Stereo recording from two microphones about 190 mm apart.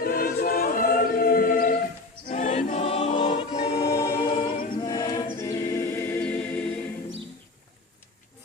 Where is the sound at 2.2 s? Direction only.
40° left (ahead or behind).